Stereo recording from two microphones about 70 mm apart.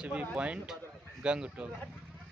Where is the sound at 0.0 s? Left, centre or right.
Centre.